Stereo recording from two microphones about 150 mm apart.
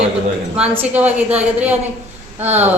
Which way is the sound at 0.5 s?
10° right (ahead or behind).